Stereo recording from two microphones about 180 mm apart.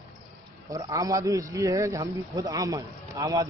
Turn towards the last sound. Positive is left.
turn(degrees=-20)  # may be behind; listen again after turning